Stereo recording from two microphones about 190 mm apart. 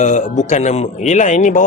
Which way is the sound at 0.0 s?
40° left (ahead or behind).